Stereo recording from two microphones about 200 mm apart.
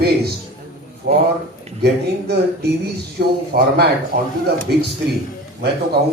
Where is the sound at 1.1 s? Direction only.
55° right (ahead or behind).